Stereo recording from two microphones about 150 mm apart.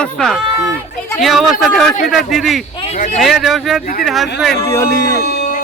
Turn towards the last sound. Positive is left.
turn(degrees=75)  # may be behind; listen again after turning